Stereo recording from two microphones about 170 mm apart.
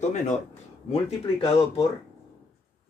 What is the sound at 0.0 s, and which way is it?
Speech, 45° left (ahead or behind).